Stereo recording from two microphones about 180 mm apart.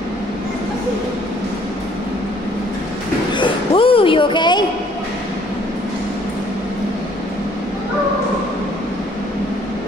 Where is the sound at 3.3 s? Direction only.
30° left (ahead or behind).